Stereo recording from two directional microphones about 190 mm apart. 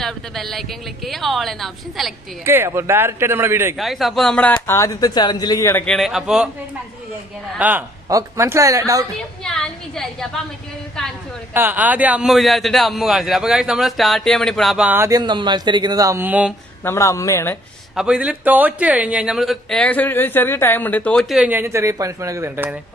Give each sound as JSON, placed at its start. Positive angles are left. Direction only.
{"t": 0.0, "sound": "a man's voice", "side_deg": 0}
{"t": 2.4, "sound": "speech", "side_deg": -10}
{"t": 3.7, "sound": "a man's voice", "side_deg": 0}
{"t": 4.6, "sound": "a man's voice", "side_deg": 15}
{"t": 7.5, "sound": "speech", "side_deg": -10}
{"t": 9.4, "sound": "a sound", "side_deg": 5}
{"t": 11.0, "sound": "a man's voice", "side_deg": 5}
{"t": 11.5, "sound": "a man's voice", "side_deg": -10}
{"t": 16.8, "sound": "a man's voice", "side_deg": 15}
{"t": 17.9, "sound": "a man's voice", "side_deg": -5}